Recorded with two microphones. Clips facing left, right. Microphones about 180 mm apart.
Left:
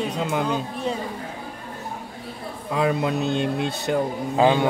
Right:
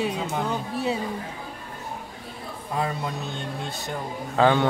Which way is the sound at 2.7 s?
85° left.